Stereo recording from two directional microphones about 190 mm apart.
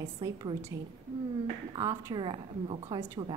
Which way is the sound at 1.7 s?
20° right (ahead or behind).